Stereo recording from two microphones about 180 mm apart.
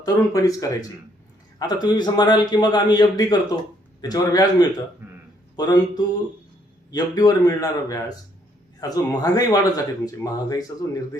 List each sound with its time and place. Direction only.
0.0 s a man's voice: 20° left (ahead or behind)
5.0 s a sound: 10° right (ahead or behind)
5.5 s a man's voice: 20° left (ahead or behind)